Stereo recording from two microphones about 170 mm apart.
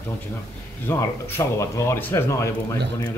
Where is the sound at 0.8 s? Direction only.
15° left (ahead or behind).